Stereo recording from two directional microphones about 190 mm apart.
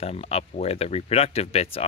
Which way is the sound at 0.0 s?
30° left (ahead or behind).